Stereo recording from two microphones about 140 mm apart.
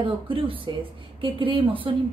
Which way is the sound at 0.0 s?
40° right (ahead or behind).